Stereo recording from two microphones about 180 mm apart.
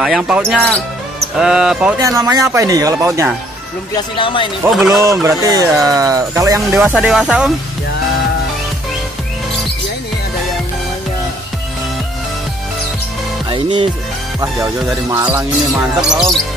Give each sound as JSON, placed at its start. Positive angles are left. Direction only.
{"t": 0.0, "sound": "speech", "side_deg": -5}
{"t": 2.0, "sound": "speech", "side_deg": -15}
{"t": 3.9, "sound": "speech", "side_deg": 30}
{"t": 4.6, "sound": "speech", "side_deg": -5}
{"t": 4.9, "sound": "speech", "side_deg": -15}
{"t": 6.8, "sound": "speech", "side_deg": -5}
{"t": 13.5, "sound": "speech", "side_deg": -25}
{"t": 16.0, "sound": "speech", "side_deg": -5}